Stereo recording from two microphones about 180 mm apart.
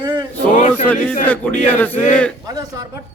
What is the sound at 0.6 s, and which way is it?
Speech, 40° left (ahead or behind).